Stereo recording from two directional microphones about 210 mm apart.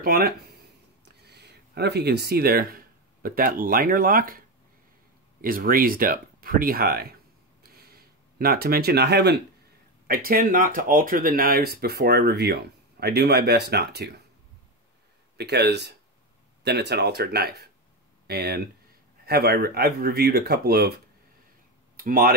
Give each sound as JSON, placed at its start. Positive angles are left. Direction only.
{"t": 0.0, "sound": "speech", "side_deg": -45}
{"t": 5.4, "sound": "speech", "side_deg": -45}
{"t": 7.6, "sound": "a sound", "side_deg": -45}
{"t": 10.0, "sound": "speech", "side_deg": -45}
{"t": 15.3, "sound": "speech", "side_deg": -50}